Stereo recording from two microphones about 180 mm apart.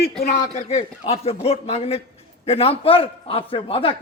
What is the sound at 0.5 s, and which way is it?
A man's voice, 35° left (ahead or behind).